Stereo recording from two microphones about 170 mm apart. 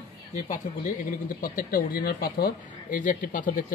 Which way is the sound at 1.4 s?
55° left (ahead or behind).